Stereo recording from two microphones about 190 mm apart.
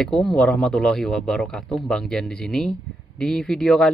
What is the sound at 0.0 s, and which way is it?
Speech, centre (ahead or behind).